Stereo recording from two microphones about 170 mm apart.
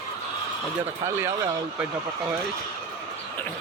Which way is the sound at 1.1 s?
15° right (ahead or behind).